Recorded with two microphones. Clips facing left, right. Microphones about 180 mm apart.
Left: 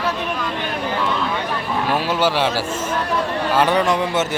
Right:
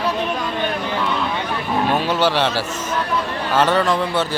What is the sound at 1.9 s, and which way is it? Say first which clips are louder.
A man's voice: left 1 dB; 10° left (ahead or behind).